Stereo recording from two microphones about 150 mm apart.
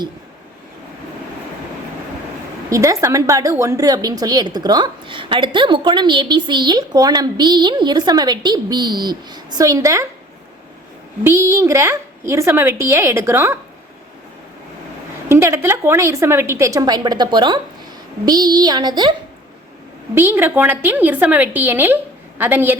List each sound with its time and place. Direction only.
2.6 s a woman's voice: 20° right (ahead or behind)
11.2 s a woman's voice: 15° right (ahead or behind)
15.3 s a woman's voice: 20° right (ahead or behind)
20.1 s a woman's voice: 15° right (ahead or behind)